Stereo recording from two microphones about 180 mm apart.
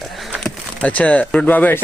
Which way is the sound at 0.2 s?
Centre (ahead or behind).